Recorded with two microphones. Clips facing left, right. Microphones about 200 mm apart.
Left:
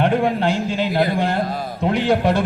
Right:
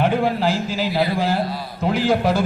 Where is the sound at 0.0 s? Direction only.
Centre (ahead or behind).